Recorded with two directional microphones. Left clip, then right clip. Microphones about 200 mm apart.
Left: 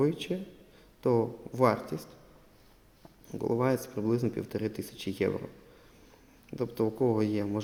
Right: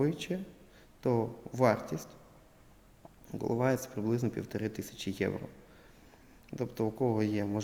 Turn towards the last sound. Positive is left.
turn(degrees=-10)  # may be behind; listen again after turning